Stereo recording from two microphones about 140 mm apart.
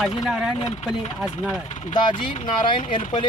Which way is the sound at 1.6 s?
55° left (ahead or behind).